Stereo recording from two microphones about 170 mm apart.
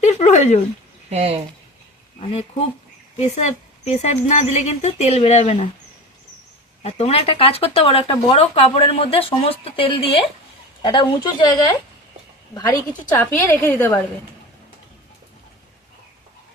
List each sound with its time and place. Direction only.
0.0 s a sound: 40° left (ahead or behind)
1.1 s speech: 35° right (ahead or behind)
3.2 s speech: 40° left (ahead or behind)
6.8 s speech: 35° left (ahead or behind)
13.1 s a woman's voice: 15° left (ahead or behind)